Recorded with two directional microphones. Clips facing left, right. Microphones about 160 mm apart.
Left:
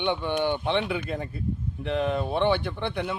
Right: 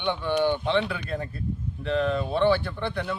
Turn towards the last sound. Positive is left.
turn(degrees=15)  # may be behind; listen again after turning